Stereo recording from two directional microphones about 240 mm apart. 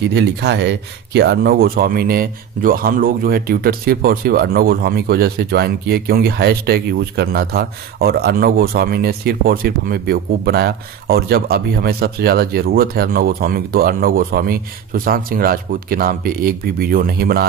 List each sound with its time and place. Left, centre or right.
0.1 s speech: right